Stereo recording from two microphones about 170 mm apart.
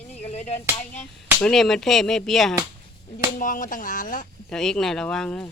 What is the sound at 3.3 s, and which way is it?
Speech, 55° left (ahead or behind).